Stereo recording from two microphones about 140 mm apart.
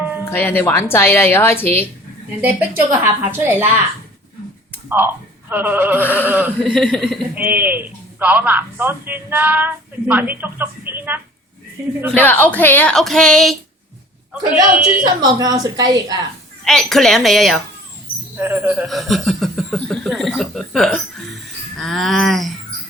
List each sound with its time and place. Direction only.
0.3 s speech: 15° left (ahead or behind)
2.4 s a man's voice: 10° right (ahead or behind)
4.9 s a man's voice: 15° right (ahead or behind)
6.6 s speech: 5° left (ahead or behind)
7.3 s a man's voice: 15° right (ahead or behind)
12.1 s a man's voice: 10° left (ahead or behind); by 14.9 s 5° right (ahead or behind)
15.4 s a woman's voice: 25° right (ahead or behind)
16.6 s speech: 5° left (ahead or behind)
18.3 s a man's voice: 15° right (ahead or behind)
18.9 s speech: centre (ahead or behind)